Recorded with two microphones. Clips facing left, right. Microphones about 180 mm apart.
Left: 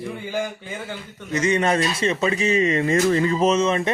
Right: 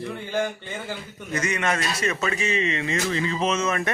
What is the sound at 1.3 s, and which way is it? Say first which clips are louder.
Speech: left 6 dB; 25° left (ahead or behind).